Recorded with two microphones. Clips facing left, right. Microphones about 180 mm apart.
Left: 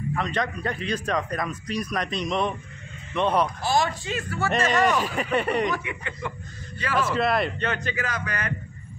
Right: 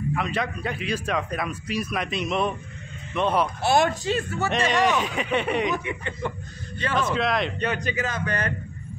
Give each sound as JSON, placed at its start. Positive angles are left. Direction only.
{"t": 0.1, "sound": "a man's voice", "side_deg": -5}
{"t": 3.6, "sound": "speech", "side_deg": -60}
{"t": 4.0, "sound": "speech", "side_deg": -30}
{"t": 4.5, "sound": "speech", "side_deg": 5}
{"t": 5.9, "sound": "speech", "side_deg": -25}
{"t": 6.9, "sound": "speech", "side_deg": 5}
{"t": 7.5, "sound": "speech", "side_deg": -15}